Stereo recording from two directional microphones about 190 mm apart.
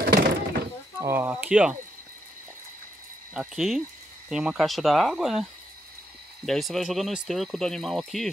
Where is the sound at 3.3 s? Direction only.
Centre (ahead or behind).